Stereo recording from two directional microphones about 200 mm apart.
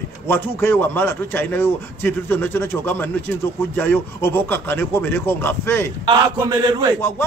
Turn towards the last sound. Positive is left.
turn(degrees=-20)  # may be behind; listen again after turning